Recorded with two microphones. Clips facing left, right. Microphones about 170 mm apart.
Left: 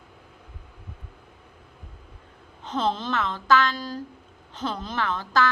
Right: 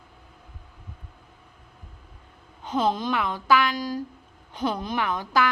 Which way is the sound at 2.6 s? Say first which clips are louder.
Right 2 dB; 10° right (ahead or behind).